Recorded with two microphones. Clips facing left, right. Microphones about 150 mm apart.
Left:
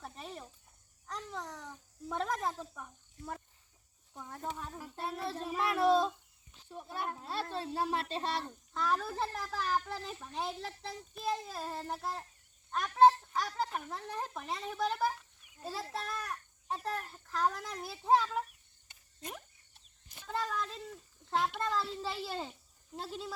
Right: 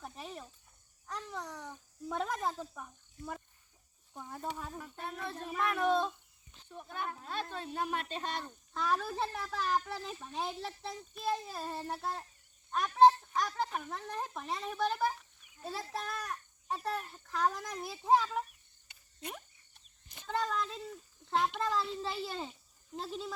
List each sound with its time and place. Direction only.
0.0 s cricket: centre (ahead or behind)
1.0 s babbling: centre (ahead or behind)
4.2 s speech: 5° right (ahead or behind)
4.9 s speech: 35° left (ahead or behind)
8.7 s a child's voice: centre (ahead or behind)
20.1 s a sound: 5° left (ahead or behind)
21.2 s a child's voice: centre (ahead or behind)